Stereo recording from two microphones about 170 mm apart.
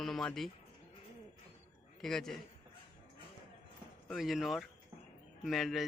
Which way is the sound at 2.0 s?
Centre (ahead or behind).